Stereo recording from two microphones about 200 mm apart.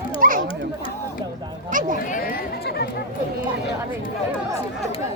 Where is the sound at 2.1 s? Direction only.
45° left (ahead or behind).